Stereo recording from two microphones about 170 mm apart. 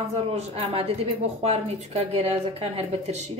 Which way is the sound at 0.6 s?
35° right (ahead or behind).